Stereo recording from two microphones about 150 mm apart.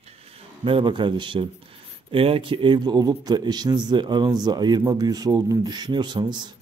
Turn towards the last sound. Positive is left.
turn(degrees=-30)  # may be behind; listen again after turning